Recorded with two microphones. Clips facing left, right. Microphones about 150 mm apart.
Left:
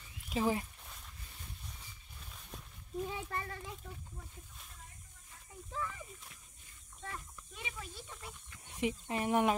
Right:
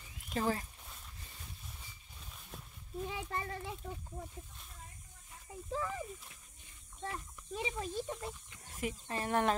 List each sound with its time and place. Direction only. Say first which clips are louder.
0.3 s speech: left 2 dB; 10° left (ahead or behind)
2.3 s a sound: even; centre (ahead or behind)
3.3 s a child's voice: right 1 dB; 25° right (ahead or behind)
5.7 s speech: right 4 dB; 30° right (ahead or behind)
8.7 s speech: left 3 dB; 20° left (ahead or behind)